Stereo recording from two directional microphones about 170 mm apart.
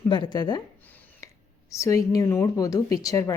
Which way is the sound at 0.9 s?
20° left (ahead or behind).